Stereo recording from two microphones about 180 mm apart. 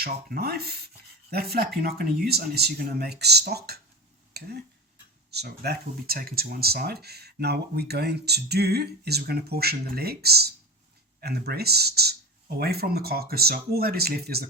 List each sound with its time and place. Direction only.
0.0 s speech: 60° right (ahead or behind)